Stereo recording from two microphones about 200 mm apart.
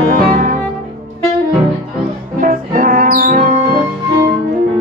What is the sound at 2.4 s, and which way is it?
Music, 40° right (ahead or behind).